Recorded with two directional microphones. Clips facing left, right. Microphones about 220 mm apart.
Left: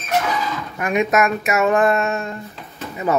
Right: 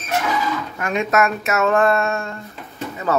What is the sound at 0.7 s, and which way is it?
Speech, 15° left (ahead or behind).